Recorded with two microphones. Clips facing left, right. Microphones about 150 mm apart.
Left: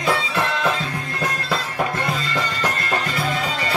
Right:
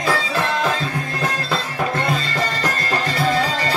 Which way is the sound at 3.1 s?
35° right (ahead or behind).